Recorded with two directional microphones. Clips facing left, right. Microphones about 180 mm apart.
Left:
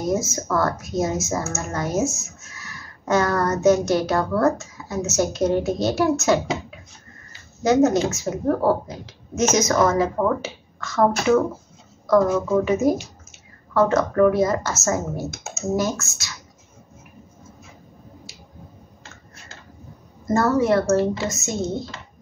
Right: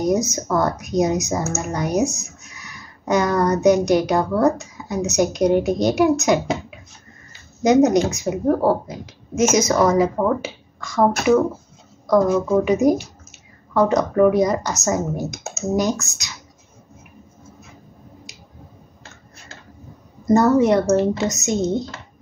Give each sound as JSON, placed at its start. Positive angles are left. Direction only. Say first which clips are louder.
{"t": 0.0, "sound": "speech", "louder": "right 4 dB", "side_deg": -20}
{"t": 7.6, "sound": "speech", "louder": "right 3 dB", "side_deg": -15}
{"t": 20.2, "sound": "speech", "louder": "right 4 dB", "side_deg": -20}